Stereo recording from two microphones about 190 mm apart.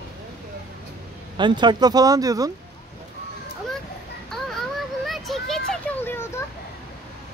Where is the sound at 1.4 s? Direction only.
25° right (ahead or behind).